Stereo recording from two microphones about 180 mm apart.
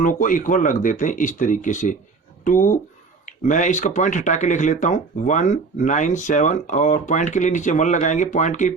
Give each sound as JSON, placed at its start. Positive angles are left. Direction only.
{"t": 0.0, "sound": "speech", "side_deg": 50}